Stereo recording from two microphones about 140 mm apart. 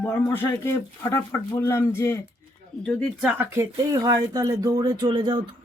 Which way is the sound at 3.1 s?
10° right (ahead or behind).